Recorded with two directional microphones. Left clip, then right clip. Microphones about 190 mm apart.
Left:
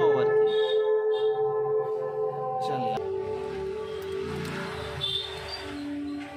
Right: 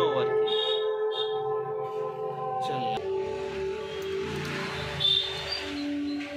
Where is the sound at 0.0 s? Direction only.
60° left (ahead or behind).